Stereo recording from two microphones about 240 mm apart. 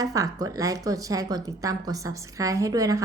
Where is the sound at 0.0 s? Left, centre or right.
Centre.